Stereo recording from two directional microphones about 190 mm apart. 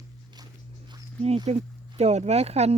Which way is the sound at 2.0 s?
35° right (ahead or behind).